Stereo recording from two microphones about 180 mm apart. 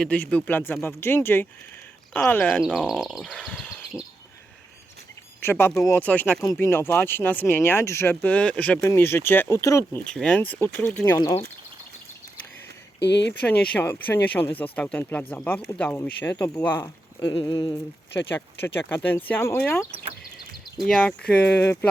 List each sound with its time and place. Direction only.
0.0 s speech: 5° left (ahead or behind)
2.7 s speech: 5° right (ahead or behind)
5.4 s speech: 15° left (ahead or behind)
10.2 s speech: 5° left (ahead or behind)
13.0 s speech: 75° left (ahead or behind)
13.4 s speech: 10° left (ahead or behind)
17.4 s a sound: 20° left (ahead or behind)
18.3 s speech: 10° left (ahead or behind)